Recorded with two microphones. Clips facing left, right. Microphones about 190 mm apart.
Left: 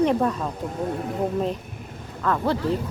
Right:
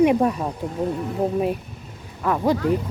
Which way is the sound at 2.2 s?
15° right (ahead or behind).